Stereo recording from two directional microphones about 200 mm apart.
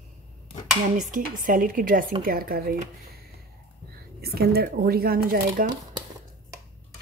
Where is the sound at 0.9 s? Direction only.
40° right (ahead or behind).